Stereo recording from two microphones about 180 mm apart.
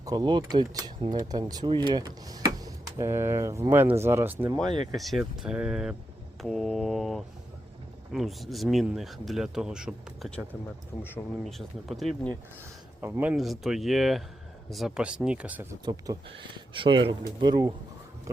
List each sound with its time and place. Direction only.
0.0 s speech: 20° right (ahead or behind)
4.9 s speech: centre (ahead or behind)
11.4 s speech: centre (ahead or behind)
13.0 s speech: 10° right (ahead or behind)
13.3 s speech: centre (ahead or behind)
15.8 s speech: 25° right (ahead or behind)